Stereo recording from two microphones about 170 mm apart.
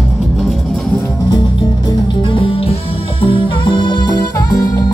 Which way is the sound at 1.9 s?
30° left (ahead or behind).